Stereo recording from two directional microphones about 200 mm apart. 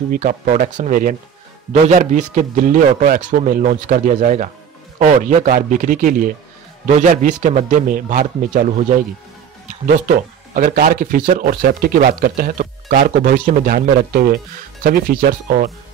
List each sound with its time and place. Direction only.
0.1 s a man's voice: 40° right (ahead or behind)